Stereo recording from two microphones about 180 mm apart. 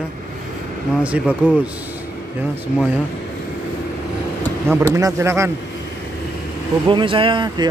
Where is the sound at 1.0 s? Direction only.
5° right (ahead or behind).